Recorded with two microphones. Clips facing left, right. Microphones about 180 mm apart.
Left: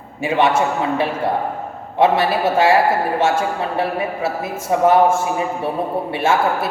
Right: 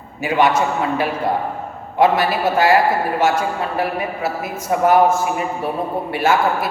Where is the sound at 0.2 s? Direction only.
25° left (ahead or behind).